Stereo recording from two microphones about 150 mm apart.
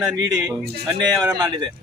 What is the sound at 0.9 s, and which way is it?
Speech, 25° right (ahead or behind).